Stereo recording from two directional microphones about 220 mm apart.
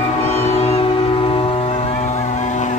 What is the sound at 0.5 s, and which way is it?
Vehicle, 25° left (ahead or behind).